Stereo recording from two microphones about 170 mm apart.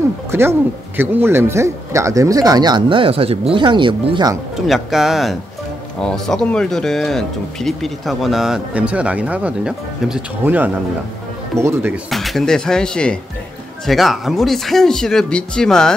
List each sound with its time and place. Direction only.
0.3 s speech: 15° right (ahead or behind)
4.6 s speech: centre (ahead or behind)
12.1 s speech: centre (ahead or behind)